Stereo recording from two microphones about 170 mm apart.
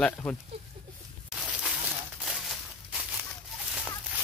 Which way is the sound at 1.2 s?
5° right (ahead or behind).